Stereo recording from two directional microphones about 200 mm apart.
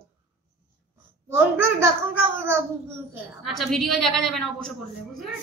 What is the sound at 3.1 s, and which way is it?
A woman's voice, centre (ahead or behind).